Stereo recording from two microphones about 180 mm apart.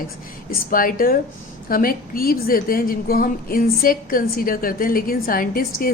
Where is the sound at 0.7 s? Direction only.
50° left (ahead or behind).